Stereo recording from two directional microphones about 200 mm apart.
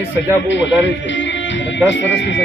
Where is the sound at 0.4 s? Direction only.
65° left (ahead or behind).